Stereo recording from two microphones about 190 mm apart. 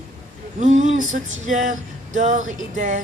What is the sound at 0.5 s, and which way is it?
Speech, 40° right (ahead or behind).